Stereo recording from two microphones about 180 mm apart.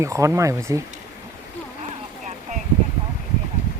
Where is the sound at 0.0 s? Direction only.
15° right (ahead or behind).